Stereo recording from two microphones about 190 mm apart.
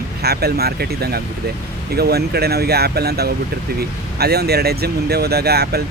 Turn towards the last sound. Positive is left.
turn(degrees=-55)  # may be behind; listen again after turning